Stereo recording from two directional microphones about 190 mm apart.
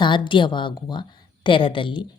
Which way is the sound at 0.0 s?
25° left (ahead or behind).